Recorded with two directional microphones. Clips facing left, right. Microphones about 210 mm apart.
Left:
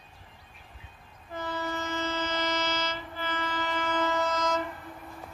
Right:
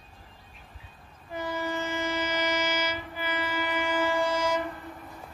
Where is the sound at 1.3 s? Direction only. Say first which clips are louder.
Right 2 dB; 15° right (ahead or behind).